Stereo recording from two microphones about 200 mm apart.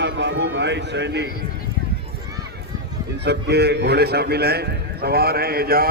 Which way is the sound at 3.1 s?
55° right (ahead or behind).